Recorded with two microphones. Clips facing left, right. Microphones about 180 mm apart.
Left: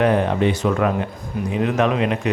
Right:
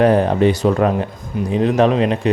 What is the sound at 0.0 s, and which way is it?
Speech, 35° right (ahead or behind).